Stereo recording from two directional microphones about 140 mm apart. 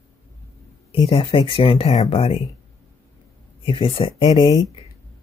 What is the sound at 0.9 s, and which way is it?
Speech, 40° left (ahead or behind).